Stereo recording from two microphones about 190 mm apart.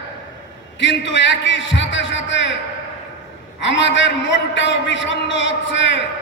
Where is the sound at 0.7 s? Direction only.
75° left (ahead or behind).